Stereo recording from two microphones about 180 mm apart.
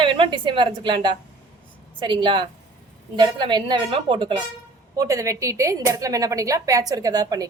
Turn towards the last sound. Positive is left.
turn(degrees=-20)  # may be behind; listen again after turning